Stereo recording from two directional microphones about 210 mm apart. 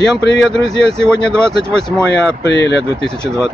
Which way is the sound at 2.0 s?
55° left (ahead or behind).